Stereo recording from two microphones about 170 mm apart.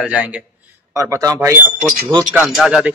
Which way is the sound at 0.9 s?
20° right (ahead or behind).